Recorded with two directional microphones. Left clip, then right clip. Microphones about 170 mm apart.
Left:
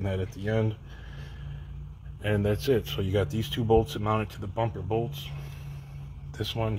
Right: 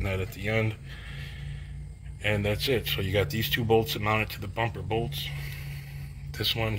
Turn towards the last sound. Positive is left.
turn(degrees=35)  # may be behind; listen again after turning